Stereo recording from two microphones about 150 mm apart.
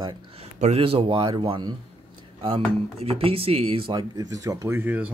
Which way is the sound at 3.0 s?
40° right (ahead or behind).